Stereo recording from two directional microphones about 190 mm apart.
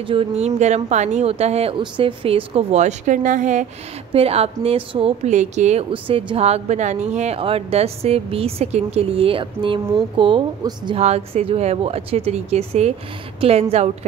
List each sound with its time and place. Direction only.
0.0 s a woman's voice: 30° right (ahead or behind)